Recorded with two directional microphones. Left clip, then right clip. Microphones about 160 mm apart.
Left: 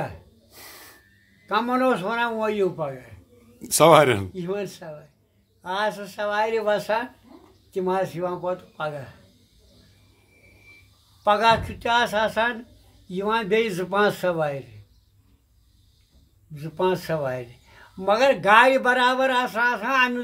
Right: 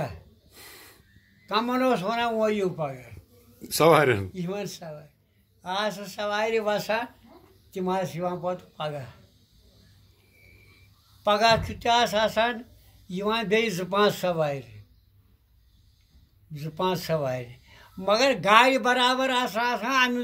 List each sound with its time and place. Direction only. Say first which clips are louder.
0.0 s gasp: left 2 dB; 20° left (ahead or behind)
1.5 s speech: left 3 dB; 10° left (ahead or behind)
11.2 s speech: left 2 dB; 10° left (ahead or behind)
16.5 s speech: left 4 dB; 5° left (ahead or behind)